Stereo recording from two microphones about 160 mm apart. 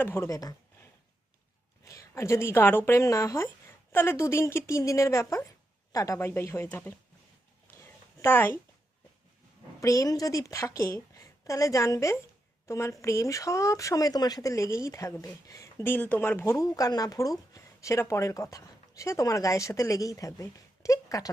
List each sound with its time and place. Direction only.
0.0 s speech: 15° left (ahead or behind)
1.8 s a woman's voice: 20° left (ahead or behind)
7.7 s a sound: 15° left (ahead or behind)
9.8 s speech: 20° left (ahead or behind)